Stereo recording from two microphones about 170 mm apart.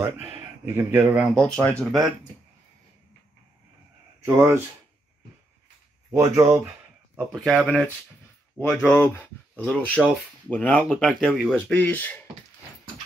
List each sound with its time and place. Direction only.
0.0 s speech: 15° right (ahead or behind)
1.0 s speech: centre (ahead or behind)
4.2 s speech: 15° right (ahead or behind)
6.1 s speech: 20° right (ahead or behind)
7.2 s speech: 5° left (ahead or behind)
10.8 s speech: 5° right (ahead or behind)
11.7 s speech: 10° left (ahead or behind)